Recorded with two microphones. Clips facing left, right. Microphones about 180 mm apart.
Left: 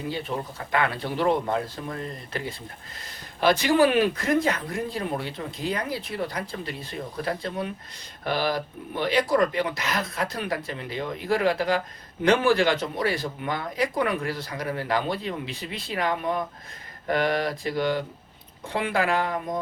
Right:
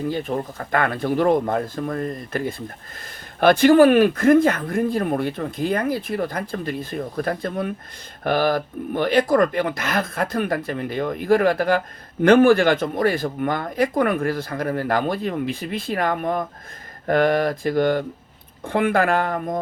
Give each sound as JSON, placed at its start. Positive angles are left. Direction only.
{"t": 0.1, "sound": "speech", "side_deg": -50}